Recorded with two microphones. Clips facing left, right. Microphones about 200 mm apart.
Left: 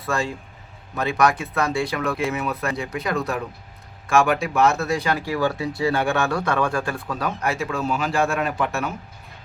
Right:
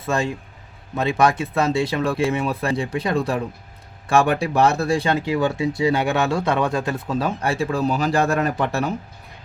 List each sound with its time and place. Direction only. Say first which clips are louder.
0.0 s speech: right 3 dB; 20° right (ahead or behind)